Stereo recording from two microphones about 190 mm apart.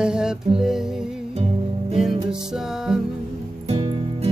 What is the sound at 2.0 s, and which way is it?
Music, centre (ahead or behind).